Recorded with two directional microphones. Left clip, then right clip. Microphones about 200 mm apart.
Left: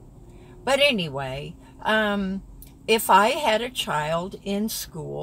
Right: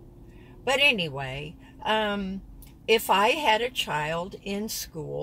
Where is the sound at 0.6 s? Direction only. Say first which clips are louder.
Left 2 dB; 10° left (ahead or behind).